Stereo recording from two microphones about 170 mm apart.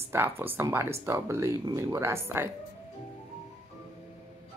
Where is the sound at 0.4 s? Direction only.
15° right (ahead or behind).